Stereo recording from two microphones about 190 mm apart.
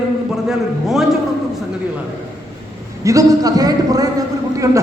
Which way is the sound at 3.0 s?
20° right (ahead or behind).